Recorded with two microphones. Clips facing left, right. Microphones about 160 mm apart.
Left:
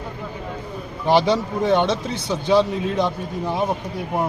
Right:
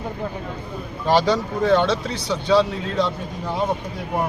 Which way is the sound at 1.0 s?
20° left (ahead or behind).